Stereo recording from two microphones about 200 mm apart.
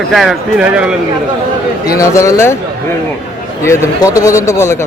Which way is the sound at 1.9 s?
15° left (ahead or behind).